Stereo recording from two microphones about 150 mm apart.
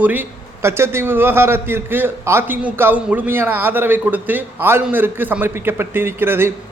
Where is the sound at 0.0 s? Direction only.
10° right (ahead or behind).